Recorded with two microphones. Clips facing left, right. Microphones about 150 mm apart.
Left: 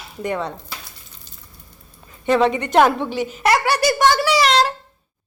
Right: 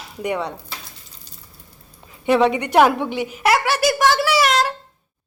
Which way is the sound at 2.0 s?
15° right (ahead or behind).